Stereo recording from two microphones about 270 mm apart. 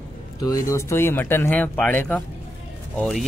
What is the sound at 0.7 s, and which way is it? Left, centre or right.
Speech, centre.